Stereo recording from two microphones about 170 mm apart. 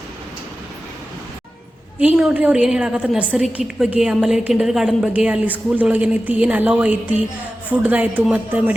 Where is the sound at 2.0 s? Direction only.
5° right (ahead or behind).